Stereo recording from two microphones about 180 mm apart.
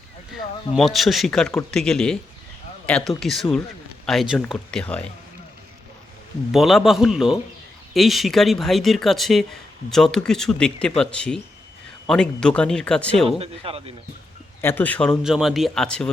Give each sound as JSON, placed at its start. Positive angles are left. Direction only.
{"t": 0.8, "sound": "speech", "side_deg": 0}
{"t": 6.5, "sound": "speech", "side_deg": 0}
{"t": 13.4, "sound": "speech", "side_deg": -30}
{"t": 14.6, "sound": "speech", "side_deg": 10}